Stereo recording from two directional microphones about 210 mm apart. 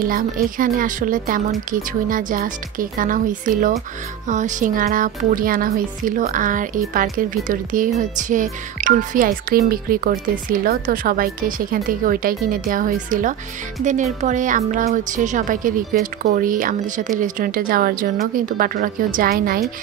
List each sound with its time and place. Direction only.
0.0 s a woman's voice: 45° right (ahead or behind)